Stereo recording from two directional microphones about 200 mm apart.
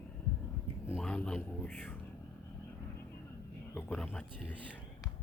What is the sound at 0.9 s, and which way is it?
A man's voice, 5° left (ahead or behind).